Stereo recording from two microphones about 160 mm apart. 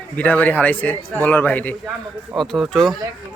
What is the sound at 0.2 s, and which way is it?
A man's voice, 10° left (ahead or behind).